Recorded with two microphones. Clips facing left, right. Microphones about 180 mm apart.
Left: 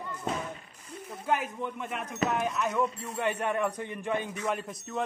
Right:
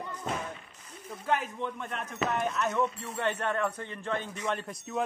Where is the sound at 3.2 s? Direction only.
10° left (ahead or behind).